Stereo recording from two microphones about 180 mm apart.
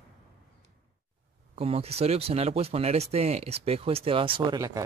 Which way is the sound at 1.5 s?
35° right (ahead or behind).